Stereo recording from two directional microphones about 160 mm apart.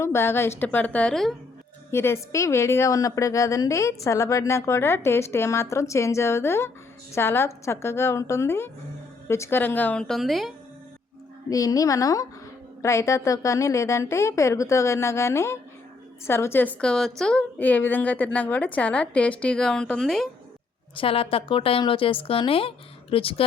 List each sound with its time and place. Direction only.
0.0 s a woman's voice: 15° left (ahead or behind)
1.9 s a woman's voice: 15° left (ahead or behind); by 10.5 s centre (ahead or behind)
11.4 s a woman's voice: 20° left (ahead or behind); by 20.2 s centre (ahead or behind)
20.9 s a woman's voice: 35° left (ahead or behind)